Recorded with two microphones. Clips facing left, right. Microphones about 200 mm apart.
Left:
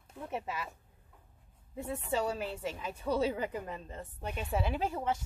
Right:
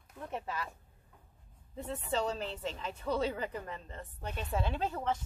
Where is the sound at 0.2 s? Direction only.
10° left (ahead or behind).